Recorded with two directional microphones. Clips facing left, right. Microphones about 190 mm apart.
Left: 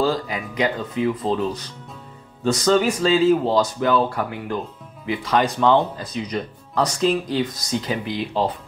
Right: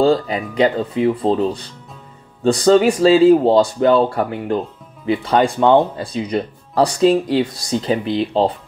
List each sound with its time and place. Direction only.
0.0 s speech: 30° right (ahead or behind)